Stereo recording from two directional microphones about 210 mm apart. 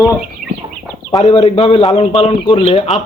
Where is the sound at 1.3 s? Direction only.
25° left (ahead or behind).